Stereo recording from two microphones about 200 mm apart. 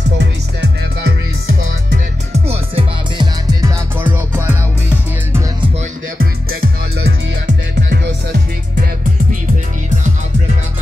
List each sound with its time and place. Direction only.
0.2 s music: 55° right (ahead or behind)
2.3 s music: 30° right (ahead or behind)
4.0 s music: 10° right (ahead or behind)
6.1 s music: 50° right (ahead or behind)